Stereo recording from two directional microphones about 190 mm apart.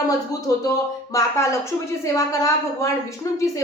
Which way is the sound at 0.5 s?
20° left (ahead or behind).